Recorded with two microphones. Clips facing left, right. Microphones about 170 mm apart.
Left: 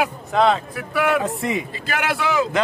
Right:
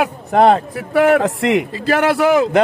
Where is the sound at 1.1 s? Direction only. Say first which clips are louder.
Right 7 dB; 85° right.